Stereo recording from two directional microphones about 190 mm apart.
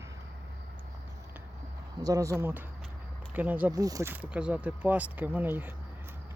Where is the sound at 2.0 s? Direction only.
15° right (ahead or behind).